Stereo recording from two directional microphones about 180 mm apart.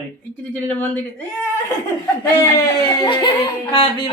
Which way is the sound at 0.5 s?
10° left (ahead or behind).